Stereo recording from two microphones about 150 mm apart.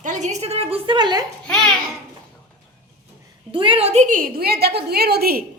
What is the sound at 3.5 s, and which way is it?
A woman's voice, 35° right (ahead or behind).